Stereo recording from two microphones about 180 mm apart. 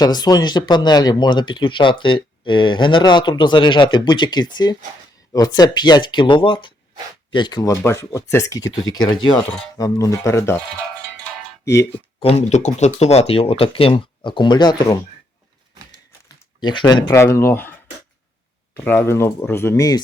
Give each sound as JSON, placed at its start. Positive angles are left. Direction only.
{"t": 0.0, "sound": "speech", "side_deg": 20}
{"t": 11.6, "sound": "speech", "side_deg": 15}
{"t": 12.2, "sound": "speech", "side_deg": 35}
{"t": 16.6, "sound": "speech", "side_deg": 25}
{"t": 18.9, "sound": "speech", "side_deg": 15}